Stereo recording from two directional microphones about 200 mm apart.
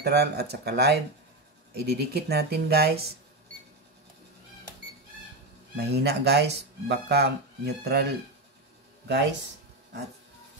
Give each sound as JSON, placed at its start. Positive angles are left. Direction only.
{"t": 0.0, "sound": "speech", "side_deg": -55}
{"t": 5.8, "sound": "speech", "side_deg": -55}